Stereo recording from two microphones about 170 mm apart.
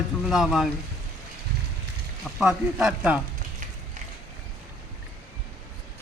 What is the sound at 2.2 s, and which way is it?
Speech, 10° right (ahead or behind).